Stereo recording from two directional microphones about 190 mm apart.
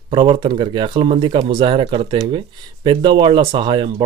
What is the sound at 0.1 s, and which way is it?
Speech, 25° right (ahead or behind).